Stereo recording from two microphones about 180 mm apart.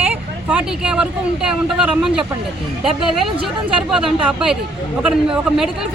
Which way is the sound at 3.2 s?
30° right (ahead or behind).